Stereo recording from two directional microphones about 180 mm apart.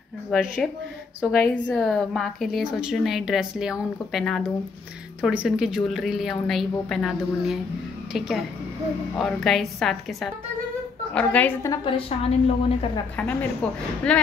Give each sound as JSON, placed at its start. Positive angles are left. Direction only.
{"t": 0.3, "sound": "a woman's voice", "side_deg": 5}
{"t": 11.8, "sound": "a woman's voice", "side_deg": 35}
{"t": 13.1, "sound": "a woman's voice", "side_deg": 10}